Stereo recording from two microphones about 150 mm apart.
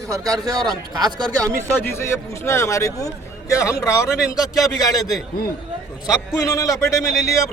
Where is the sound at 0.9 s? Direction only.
25° right (ahead or behind).